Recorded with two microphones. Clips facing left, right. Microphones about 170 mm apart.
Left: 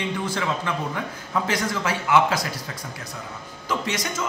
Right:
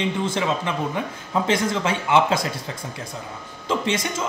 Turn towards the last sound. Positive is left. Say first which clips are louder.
# right 3 dB
turn(degrees=-25)  # may be behind; listen again after turning